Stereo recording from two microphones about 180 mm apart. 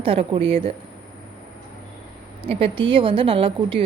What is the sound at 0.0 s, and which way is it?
Speech, 35° right (ahead or behind).